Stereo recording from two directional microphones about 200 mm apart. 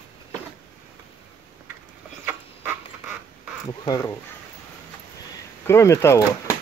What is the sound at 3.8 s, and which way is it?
Speech, 15° left (ahead or behind).